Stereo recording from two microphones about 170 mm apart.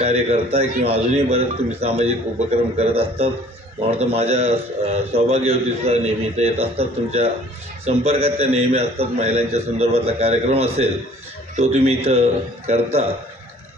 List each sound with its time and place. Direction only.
0.0 s a man's voice: 40° right (ahead or behind)